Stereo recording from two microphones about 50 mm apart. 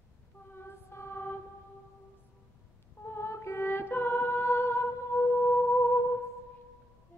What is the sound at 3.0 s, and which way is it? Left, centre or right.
Music, left.